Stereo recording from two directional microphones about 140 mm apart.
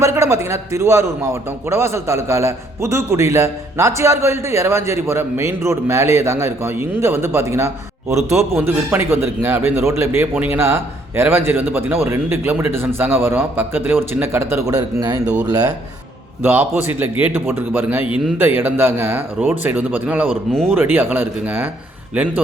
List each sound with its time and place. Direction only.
0.0 s a man's voice: 20° right (ahead or behind)
16.4 s a man's voice: 15° right (ahead or behind)
20.3 s speech: 5° left (ahead or behind)
20.7 s a man's voice: 15° right (ahead or behind)